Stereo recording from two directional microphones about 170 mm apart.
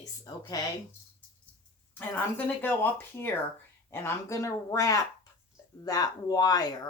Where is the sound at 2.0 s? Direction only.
10° left (ahead or behind).